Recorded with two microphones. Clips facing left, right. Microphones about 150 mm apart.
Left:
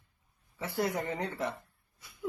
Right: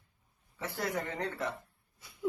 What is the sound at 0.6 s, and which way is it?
Speech, 10° left (ahead or behind).